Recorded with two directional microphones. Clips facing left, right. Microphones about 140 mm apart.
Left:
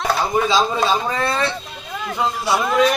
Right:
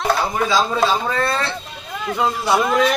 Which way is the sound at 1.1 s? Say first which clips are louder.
Even; 15° left (ahead or behind).